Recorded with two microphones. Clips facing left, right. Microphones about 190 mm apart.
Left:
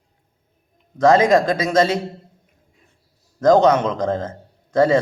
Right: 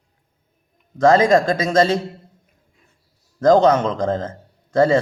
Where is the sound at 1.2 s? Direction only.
30° right (ahead or behind).